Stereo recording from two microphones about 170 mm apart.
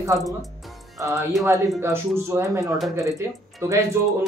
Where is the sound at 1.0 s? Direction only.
15° right (ahead or behind).